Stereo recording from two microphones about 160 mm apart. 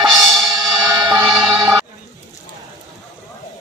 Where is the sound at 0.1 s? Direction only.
Centre (ahead or behind).